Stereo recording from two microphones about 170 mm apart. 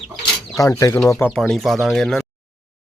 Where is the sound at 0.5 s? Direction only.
20° left (ahead or behind).